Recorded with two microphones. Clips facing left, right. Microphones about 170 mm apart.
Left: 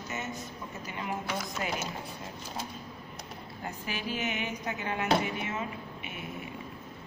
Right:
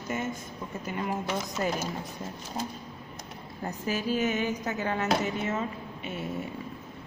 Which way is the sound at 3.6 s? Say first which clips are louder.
Right 6 dB; 40° right (ahead or behind).